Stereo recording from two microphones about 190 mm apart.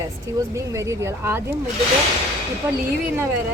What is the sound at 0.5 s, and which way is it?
Speech, 15° right (ahead or behind).